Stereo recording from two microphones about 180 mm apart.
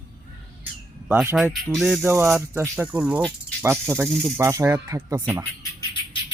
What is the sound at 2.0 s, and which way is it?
Speech, 10° right (ahead or behind).